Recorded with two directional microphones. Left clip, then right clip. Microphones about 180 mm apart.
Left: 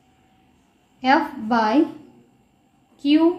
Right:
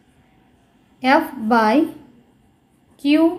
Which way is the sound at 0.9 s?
35° right (ahead or behind).